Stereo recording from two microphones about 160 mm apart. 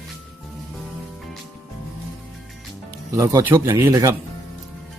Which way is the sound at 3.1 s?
20° right (ahead or behind).